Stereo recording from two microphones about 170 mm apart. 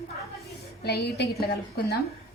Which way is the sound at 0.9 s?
75° left (ahead or behind).